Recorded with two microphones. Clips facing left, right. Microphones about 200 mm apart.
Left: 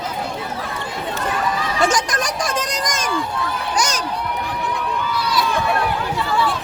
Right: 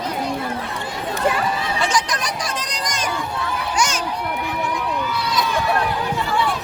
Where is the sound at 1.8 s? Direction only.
45° left (ahead or behind).